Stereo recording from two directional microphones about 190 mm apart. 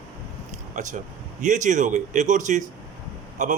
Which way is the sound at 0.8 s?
40° right (ahead or behind).